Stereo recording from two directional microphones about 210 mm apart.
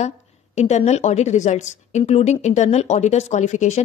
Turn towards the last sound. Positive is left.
turn(degrees=35)  # may be behind; listen again after turning